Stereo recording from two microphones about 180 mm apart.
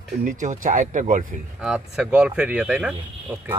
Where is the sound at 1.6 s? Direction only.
5° right (ahead or behind).